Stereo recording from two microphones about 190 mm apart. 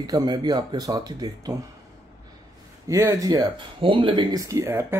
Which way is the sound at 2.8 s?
15° right (ahead or behind).